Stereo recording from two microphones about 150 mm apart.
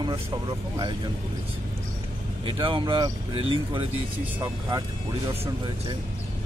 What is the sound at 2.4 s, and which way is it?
Speech, 35° right (ahead or behind).